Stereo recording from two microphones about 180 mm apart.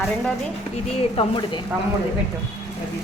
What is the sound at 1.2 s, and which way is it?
Speech, 25° left (ahead or behind).